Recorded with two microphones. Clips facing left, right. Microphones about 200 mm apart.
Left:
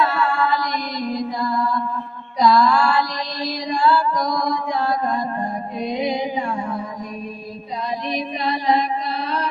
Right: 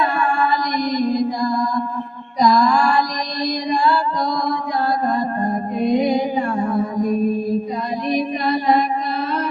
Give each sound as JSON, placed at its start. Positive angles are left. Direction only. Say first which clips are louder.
{"t": 0.0, "sound": "mantra", "louder": "right 1 dB", "side_deg": -15}
{"t": 2.4, "sound": "music", "louder": "right 1 dB", "side_deg": -15}
{"t": 5.0, "sound": "music", "louder": "right 3 dB", "side_deg": -40}
{"t": 8.1, "sound": "a sound", "louder": "right 7 dB", "side_deg": -45}